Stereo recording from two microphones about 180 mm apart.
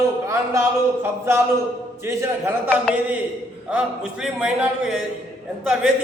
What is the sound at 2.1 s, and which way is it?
Speech, 15° right (ahead or behind).